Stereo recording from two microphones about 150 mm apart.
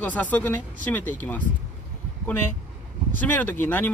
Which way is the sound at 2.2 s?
15° left (ahead or behind).